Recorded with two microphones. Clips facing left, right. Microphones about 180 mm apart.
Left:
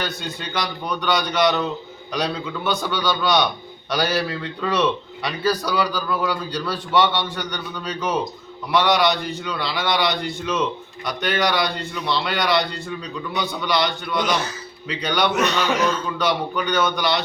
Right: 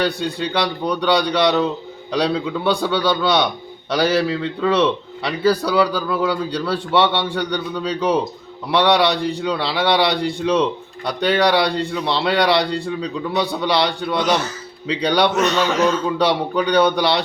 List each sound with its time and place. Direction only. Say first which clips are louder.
0.0 s a man's voice: right 8 dB; 35° right (ahead or behind)